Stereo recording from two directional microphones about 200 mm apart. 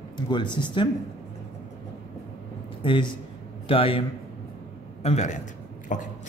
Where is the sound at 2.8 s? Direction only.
25° left (ahead or behind).